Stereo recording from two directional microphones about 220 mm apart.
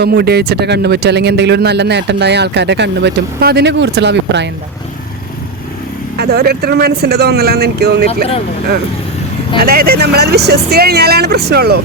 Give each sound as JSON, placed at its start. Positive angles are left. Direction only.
{"t": 0.0, "sound": "speech", "side_deg": -45}
{"t": 6.1, "sound": "speech", "side_deg": -45}
{"t": 9.6, "sound": "speech", "side_deg": -45}